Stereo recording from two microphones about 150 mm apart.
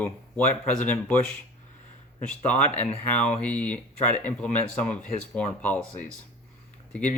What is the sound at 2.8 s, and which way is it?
Speech, 10° left (ahead or behind).